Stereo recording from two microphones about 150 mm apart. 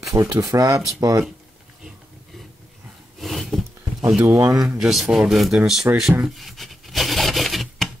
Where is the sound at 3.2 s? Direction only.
Centre (ahead or behind).